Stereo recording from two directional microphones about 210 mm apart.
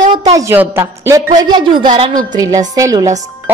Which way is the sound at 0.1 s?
15° right (ahead or behind).